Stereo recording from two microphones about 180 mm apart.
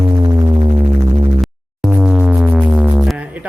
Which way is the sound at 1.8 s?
5° right (ahead or behind).